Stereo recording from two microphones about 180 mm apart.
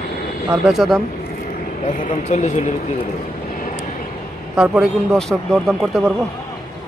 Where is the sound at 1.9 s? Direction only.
45° left (ahead or behind).